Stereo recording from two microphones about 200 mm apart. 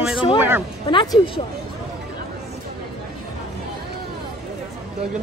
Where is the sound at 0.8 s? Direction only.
25° left (ahead or behind).